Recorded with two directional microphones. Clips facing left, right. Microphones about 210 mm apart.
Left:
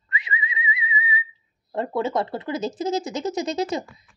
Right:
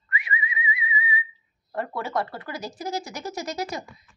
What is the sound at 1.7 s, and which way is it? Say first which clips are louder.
Speech: left 5 dB; 20° left (ahead or behind).